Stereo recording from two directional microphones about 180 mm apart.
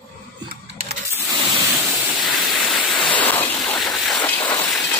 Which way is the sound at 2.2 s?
Centre (ahead or behind).